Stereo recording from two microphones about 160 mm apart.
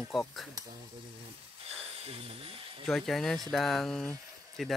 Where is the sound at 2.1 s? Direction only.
35° right (ahead or behind).